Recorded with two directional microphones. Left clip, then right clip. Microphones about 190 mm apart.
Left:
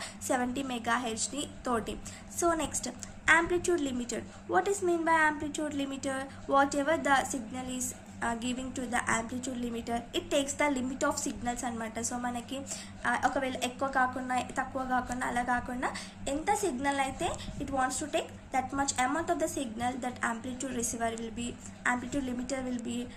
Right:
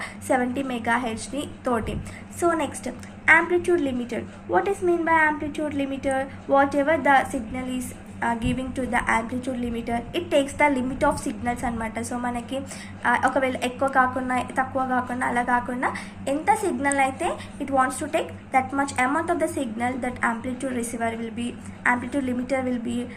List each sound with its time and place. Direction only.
0.0 s a woman's voice: 25° left (ahead or behind)